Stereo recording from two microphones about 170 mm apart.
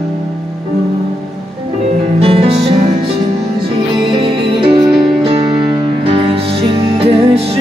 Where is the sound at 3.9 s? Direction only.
25° right (ahead or behind).